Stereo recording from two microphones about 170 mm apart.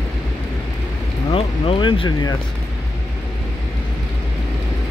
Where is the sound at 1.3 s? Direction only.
30° left (ahead or behind).